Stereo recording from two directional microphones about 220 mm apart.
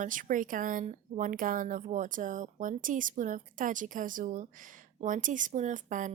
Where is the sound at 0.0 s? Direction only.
35° right (ahead or behind).